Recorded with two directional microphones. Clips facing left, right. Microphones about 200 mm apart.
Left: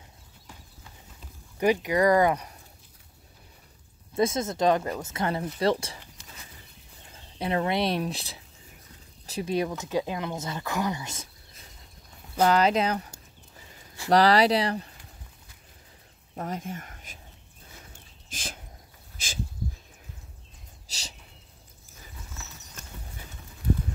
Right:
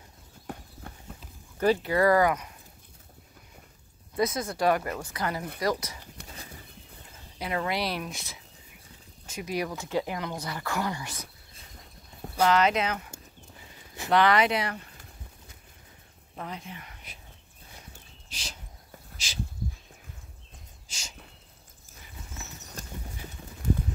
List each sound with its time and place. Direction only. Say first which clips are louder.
0.5 s clip-clop: right 10 dB; 60° right (ahead or behind)
1.6 s speech: left 1 dB; 15° left (ahead or behind)
4.1 s speech: left 3 dB; 25° left (ahead or behind)
6.2 s a sound: right 5 dB; 60° right (ahead or behind)
7.3 s speech: left 4 dB; 25° left (ahead or behind)
9.7 s speech: left 1 dB; 15° left (ahead or behind)
12.4 s speech: left 2 dB; 35° left (ahead or behind)
16.3 s speech: left 5 dB; 45° left (ahead or behind)
18.3 s a sound: left 4 dB; 50° left (ahead or behind)
20.9 s a sound: left 2 dB; 40° left (ahead or behind)